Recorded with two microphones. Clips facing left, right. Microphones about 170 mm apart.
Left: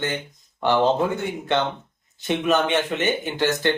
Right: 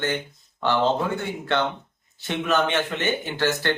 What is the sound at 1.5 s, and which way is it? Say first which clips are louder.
Speech: left 1 dB; 20° left (ahead or behind).